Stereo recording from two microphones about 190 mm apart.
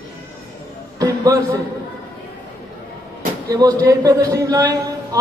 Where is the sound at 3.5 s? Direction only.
20° right (ahead or behind).